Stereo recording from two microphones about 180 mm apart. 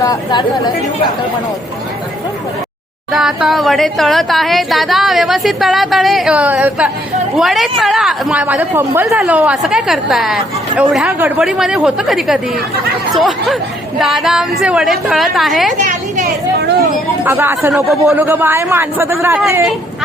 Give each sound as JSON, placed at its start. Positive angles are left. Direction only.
{"t": 0.0, "sound": "speech", "side_deg": 20}
{"t": 3.1, "sound": "a woman's voice", "side_deg": 0}
{"t": 15.8, "sound": "a sound", "side_deg": -45}
{"t": 17.2, "sound": "a man's voice", "side_deg": -10}